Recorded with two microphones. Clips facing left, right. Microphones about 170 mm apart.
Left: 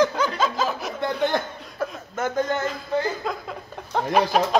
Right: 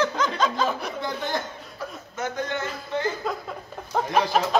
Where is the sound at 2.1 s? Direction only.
50° left (ahead or behind).